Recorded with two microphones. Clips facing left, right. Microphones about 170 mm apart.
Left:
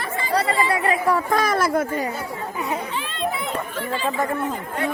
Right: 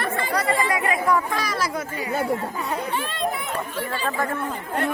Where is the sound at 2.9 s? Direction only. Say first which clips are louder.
Right 1 dB; 45° right (ahead or behind).